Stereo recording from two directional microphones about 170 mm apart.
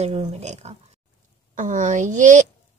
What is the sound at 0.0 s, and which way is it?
A woman's voice, 40° right (ahead or behind).